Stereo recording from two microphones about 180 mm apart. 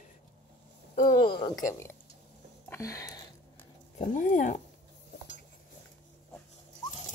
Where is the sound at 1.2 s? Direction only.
25° left (ahead or behind).